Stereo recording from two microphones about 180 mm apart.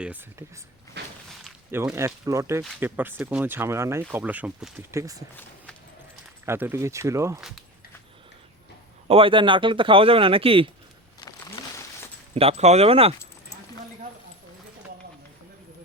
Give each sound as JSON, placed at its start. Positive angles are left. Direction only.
{"t": 0.0, "sound": "speech", "side_deg": -10}
{"t": 1.0, "sound": "walk", "side_deg": -70}
{"t": 1.7, "sound": "speech", "side_deg": -15}
{"t": 6.4, "sound": "speech", "side_deg": -10}
{"t": 9.0, "sound": "speech", "side_deg": -30}
{"t": 11.2, "sound": "a sound", "side_deg": 20}
{"t": 12.3, "sound": "speech", "side_deg": -35}